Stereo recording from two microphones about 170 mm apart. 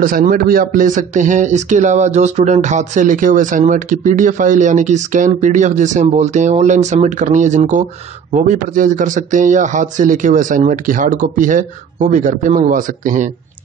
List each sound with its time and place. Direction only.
0.0 s speech: 55° right (ahead or behind)